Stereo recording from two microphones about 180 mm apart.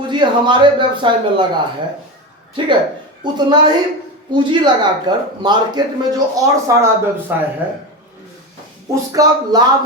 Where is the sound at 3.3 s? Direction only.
25° right (ahead or behind).